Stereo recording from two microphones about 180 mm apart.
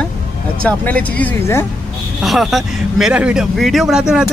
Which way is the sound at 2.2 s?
Centre (ahead or behind).